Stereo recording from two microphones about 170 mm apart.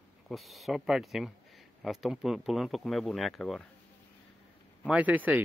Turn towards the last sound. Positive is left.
turn(degrees=-10)  # may be behind; listen again after turning